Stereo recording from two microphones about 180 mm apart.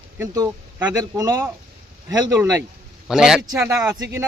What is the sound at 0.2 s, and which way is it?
Speech, 20° right (ahead or behind).